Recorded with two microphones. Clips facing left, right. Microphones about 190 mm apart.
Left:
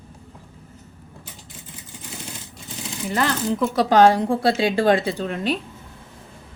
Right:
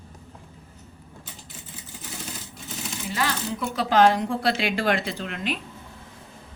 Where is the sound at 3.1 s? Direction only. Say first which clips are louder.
Left 5 dB; 55° left (ahead or behind).